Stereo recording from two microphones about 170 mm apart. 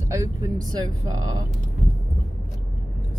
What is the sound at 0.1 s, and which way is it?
Speech, 20° right (ahead or behind).